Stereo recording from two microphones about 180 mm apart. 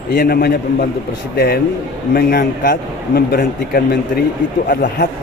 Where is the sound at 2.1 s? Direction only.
55° left (ahead or behind).